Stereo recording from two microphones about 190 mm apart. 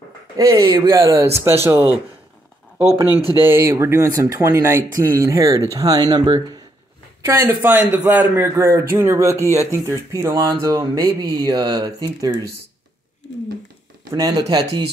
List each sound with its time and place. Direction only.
0.4 s a man's voice: 20° right (ahead or behind)
14.1 s a man's voice: 20° right (ahead or behind)